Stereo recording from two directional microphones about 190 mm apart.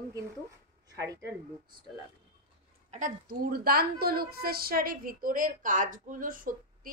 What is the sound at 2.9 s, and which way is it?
A woman's voice, 45° right (ahead or behind).